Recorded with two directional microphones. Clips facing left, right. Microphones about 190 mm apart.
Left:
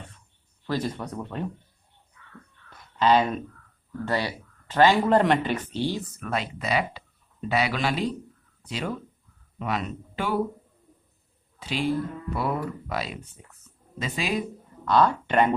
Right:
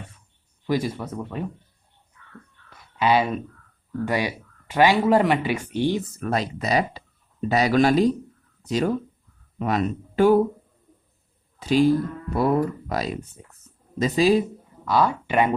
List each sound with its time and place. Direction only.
0.6 s speech: 10° right (ahead or behind)
2.6 s a sound: 10° right (ahead or behind)
4.0 s speech: 15° right (ahead or behind)
6.1 s speech: 40° right (ahead or behind)
11.6 s speech: 40° right (ahead or behind)
14.8 s speech: 10° right (ahead or behind)